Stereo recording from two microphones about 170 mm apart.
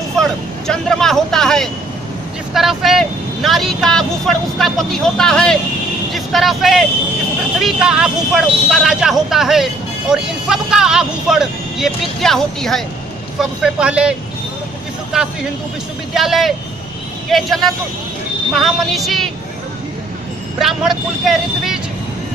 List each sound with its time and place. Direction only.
0.7 s speech: 5° left (ahead or behind)
20.6 s speech: centre (ahead or behind)